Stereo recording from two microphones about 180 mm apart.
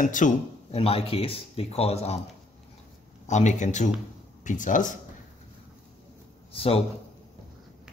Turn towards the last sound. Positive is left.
turn(degrees=30)  # may be behind; listen again after turning